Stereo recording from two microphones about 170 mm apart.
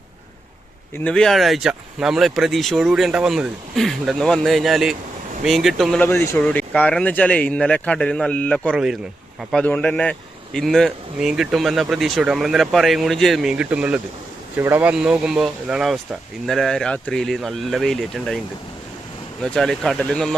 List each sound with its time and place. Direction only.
0.9 s speech: 5° left (ahead or behind)
19.4 s speech: 5° left (ahead or behind)